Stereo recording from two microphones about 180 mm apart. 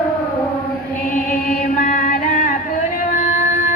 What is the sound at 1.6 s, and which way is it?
Music, 45° left (ahead or behind).